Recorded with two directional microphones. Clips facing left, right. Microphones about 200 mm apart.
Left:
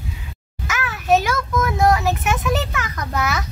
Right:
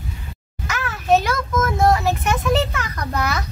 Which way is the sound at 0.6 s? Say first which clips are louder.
Even; centre (ahead or behind).